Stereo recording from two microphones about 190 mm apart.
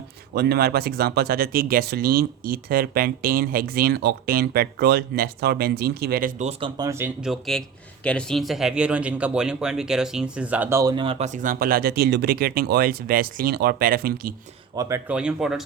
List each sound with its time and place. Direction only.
0.3 s speech: 55° right (ahead or behind)
6.6 s speech: 20° right (ahead or behind)
7.3 s speech: centre (ahead or behind); by 11.3 s 30° right (ahead or behind)
11.3 s speech: 50° right (ahead or behind)
14.8 s speech: 15° right (ahead or behind)